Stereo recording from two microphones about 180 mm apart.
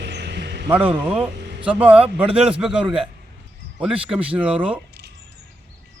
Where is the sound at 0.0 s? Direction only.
70° right (ahead or behind).